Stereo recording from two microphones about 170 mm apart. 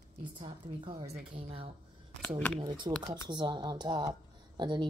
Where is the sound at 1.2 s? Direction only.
45° right (ahead or behind).